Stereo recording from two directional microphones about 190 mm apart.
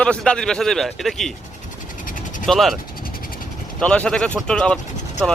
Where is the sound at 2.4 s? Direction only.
Centre (ahead or behind).